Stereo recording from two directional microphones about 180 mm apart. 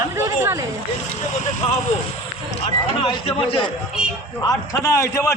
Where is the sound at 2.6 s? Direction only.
35° left (ahead or behind).